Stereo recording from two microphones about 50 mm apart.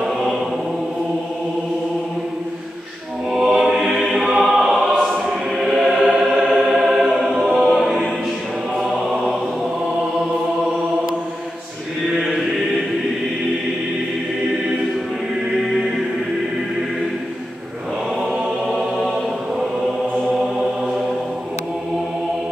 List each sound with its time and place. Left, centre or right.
0.0 s chant: centre
3.3 s choir: centre
6.0 s music: centre
6.4 s choir: centre
18.7 s choir: centre